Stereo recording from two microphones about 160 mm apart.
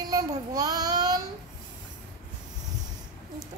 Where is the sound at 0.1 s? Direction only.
25° right (ahead or behind).